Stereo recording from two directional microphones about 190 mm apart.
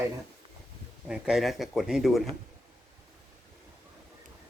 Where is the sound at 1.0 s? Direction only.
5° right (ahead or behind).